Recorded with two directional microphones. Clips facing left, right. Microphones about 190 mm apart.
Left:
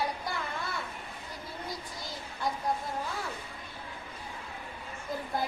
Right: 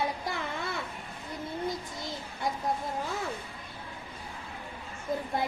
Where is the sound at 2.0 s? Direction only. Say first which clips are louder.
Right 2 dB; 25° right (ahead or behind).